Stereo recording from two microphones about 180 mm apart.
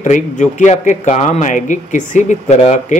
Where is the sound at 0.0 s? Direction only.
45° left (ahead or behind).